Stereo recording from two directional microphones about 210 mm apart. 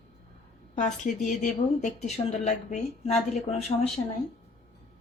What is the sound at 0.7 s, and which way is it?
Speech, 35° left (ahead or behind).